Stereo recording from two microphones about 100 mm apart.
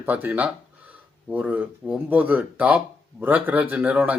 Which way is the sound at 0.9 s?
15° right (ahead or behind).